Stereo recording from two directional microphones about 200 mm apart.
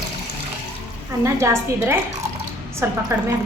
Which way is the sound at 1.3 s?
15° right (ahead or behind).